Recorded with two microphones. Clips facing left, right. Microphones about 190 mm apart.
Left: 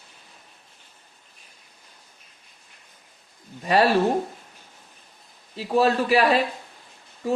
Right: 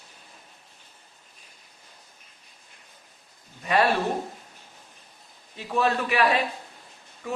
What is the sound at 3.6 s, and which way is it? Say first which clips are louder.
Speech: left 3 dB; 35° left (ahead or behind).